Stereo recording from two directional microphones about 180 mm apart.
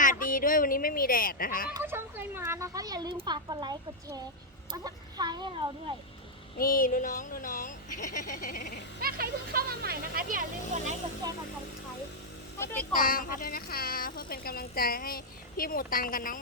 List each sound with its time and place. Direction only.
0.0 s speech: 50° left (ahead or behind)
1.7 s speech: 15° right (ahead or behind)
6.6 s speech: 50° left (ahead or behind)
9.0 s speech: 55° right (ahead or behind)
12.5 s a child's voice: 10° left (ahead or behind)
12.9 s speech: 50° left (ahead or behind)